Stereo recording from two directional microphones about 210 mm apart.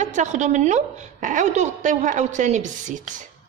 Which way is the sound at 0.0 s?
35° right (ahead or behind).